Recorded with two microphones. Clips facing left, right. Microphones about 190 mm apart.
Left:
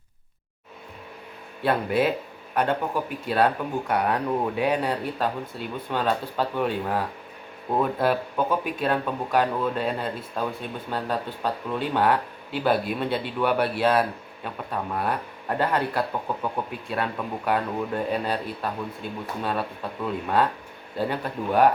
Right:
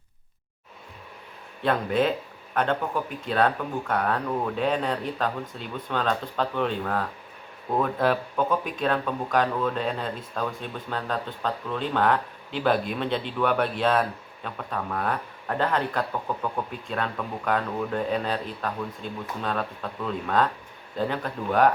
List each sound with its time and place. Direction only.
1.6 s speech: 10° left (ahead or behind)